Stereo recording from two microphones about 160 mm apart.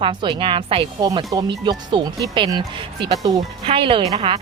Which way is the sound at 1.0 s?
25° right (ahead or behind).